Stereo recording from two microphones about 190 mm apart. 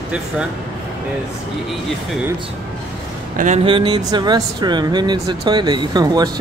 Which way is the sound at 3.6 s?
25° right (ahead or behind).